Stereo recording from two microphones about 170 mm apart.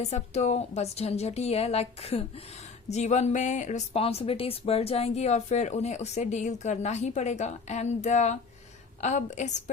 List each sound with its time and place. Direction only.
0.0 s a woman's voice: 40° left (ahead or behind)